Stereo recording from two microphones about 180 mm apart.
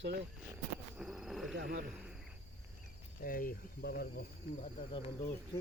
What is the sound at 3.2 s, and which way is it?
Speech, 50° left (ahead or behind).